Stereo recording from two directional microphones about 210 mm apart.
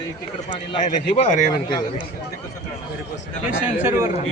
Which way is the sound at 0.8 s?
35° left (ahead or behind).